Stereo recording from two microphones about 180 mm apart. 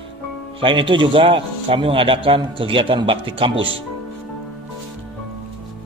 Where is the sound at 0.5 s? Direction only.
30° right (ahead or behind).